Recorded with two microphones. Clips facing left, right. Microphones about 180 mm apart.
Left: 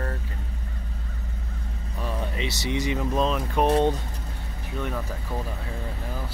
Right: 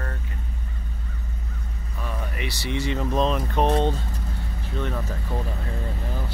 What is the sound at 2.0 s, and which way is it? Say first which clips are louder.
Speech: left 2 dB; 25° left (ahead or behind).